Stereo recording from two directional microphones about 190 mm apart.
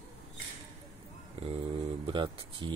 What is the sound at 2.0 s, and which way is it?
Speech, 25° right (ahead or behind).